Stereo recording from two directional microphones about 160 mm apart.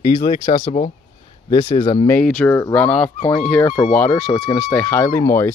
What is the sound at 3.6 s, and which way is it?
Speech, 20° left (ahead or behind).